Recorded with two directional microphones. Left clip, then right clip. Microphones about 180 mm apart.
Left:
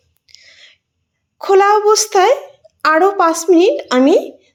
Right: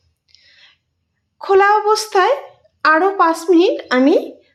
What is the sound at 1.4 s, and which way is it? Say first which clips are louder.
A woman's voice: left 2 dB; 25° left (ahead or behind).